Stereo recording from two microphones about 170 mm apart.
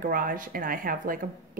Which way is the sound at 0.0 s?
55° right (ahead or behind).